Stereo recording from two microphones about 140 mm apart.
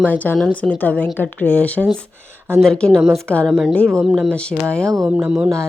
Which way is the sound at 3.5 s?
5° right (ahead or behind).